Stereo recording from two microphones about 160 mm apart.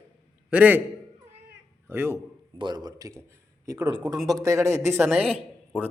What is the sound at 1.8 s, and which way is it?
Speech, 15° right (ahead or behind).